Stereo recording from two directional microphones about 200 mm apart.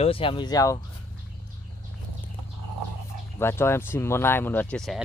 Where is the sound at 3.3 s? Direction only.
10° left (ahead or behind).